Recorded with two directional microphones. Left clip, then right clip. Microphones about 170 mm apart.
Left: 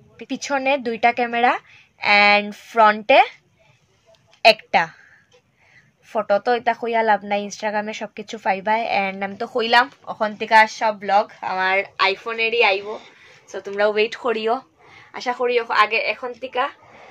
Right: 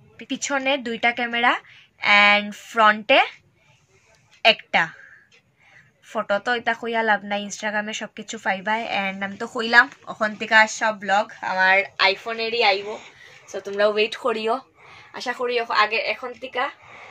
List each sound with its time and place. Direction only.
0.2 s speech: 50° left (ahead or behind)
4.4 s a woman's voice: 50° left (ahead or behind)
6.0 s speech: 45° left (ahead or behind); by 11.8 s 30° left (ahead or behind)
12.0 s a woman's voice: 15° left (ahead or behind)
16.4 s a sound: centre (ahead or behind)